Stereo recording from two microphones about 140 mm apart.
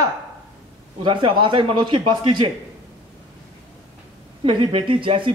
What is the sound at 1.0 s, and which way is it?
Speech, 35° right (ahead or behind).